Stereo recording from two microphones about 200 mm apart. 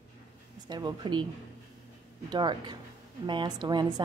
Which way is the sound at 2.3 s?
20° right (ahead or behind).